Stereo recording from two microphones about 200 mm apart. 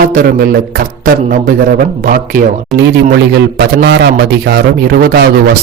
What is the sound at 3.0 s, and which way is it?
A man's voice, 55° right (ahead or behind).